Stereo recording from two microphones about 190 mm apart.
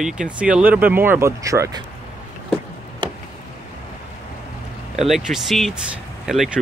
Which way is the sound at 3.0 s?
25° right (ahead or behind).